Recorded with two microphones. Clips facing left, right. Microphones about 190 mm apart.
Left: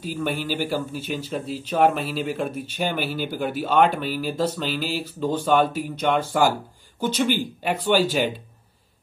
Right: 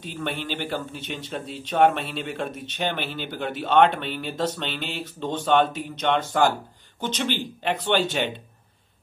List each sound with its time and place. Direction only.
0.0 s a man's voice: 5° left (ahead or behind)